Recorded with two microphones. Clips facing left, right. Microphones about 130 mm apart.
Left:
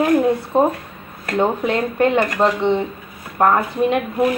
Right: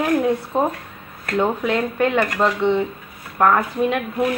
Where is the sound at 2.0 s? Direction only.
30° left (ahead or behind).